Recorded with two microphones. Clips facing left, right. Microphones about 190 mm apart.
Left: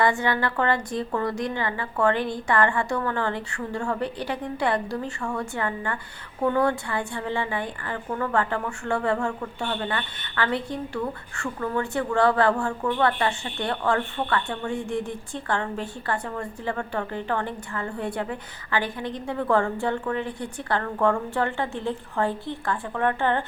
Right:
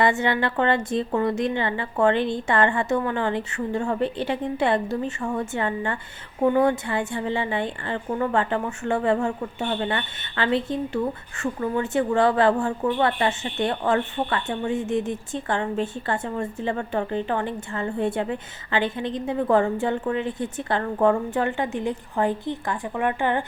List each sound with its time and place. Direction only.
0.0 s a woman's voice: 20° right (ahead or behind)